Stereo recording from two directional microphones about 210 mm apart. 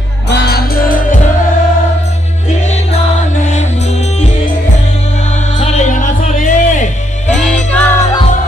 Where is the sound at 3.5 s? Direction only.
35° left (ahead or behind).